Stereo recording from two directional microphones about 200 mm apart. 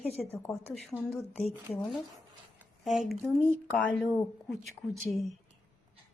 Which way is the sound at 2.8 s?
Centre (ahead or behind).